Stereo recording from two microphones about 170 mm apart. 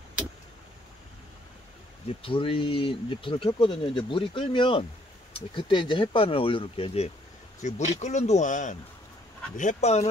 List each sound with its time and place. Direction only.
2.0 s speech: 30° left (ahead or behind)
7.6 s speech: 45° left (ahead or behind)